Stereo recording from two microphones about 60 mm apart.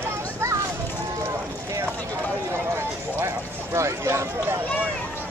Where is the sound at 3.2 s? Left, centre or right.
Right.